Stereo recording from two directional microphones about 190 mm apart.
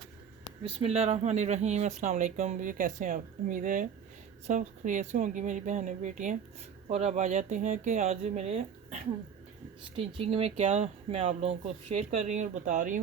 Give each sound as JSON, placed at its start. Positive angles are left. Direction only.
{"t": 0.6, "sound": "speech", "side_deg": -30}
{"t": 10.2, "sound": "speech", "side_deg": -30}